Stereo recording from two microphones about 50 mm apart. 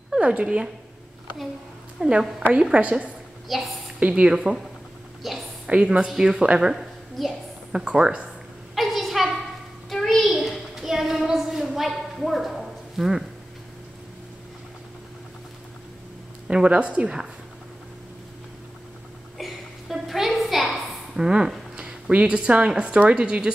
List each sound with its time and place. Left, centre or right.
0.2 s a woman's voice: right
2.0 s a woman's voice: centre
3.4 s a woman's voice: centre
4.1 s speech: centre
5.2 s a woman's voice: centre
5.7 s a woman's voice: right
6.7 s a sound: centre
7.7 s speech: centre
8.7 s a sound: centre
9.8 s child singing: centre
16.4 s a woman's voice: right
19.3 s a sound: centre
21.7 s a woman's voice: right